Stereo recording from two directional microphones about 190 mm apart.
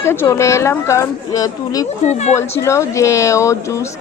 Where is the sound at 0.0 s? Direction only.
15° left (ahead or behind).